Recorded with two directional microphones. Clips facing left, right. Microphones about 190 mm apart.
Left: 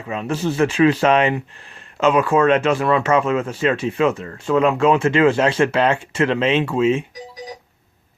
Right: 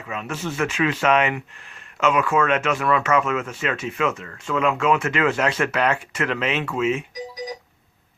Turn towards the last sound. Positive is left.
turn(degrees=30)  # may be behind; listen again after turning